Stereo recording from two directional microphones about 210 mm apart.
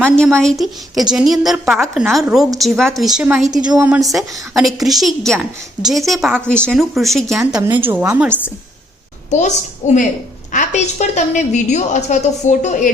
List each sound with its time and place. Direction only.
0.2 s a woman's voice: 5° left (ahead or behind)
9.3 s a woman's voice: 35° left (ahead or behind)